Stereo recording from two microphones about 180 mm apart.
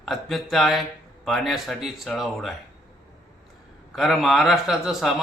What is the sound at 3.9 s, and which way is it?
Speech, centre (ahead or behind).